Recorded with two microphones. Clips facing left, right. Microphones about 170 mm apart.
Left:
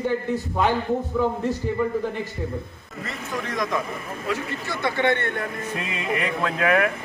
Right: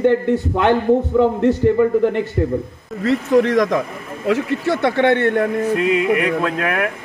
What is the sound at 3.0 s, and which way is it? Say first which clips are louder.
Speech: right 16 dB; 90° right.